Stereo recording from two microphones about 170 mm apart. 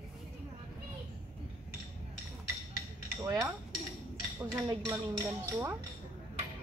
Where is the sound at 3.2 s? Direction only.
20° right (ahead or behind).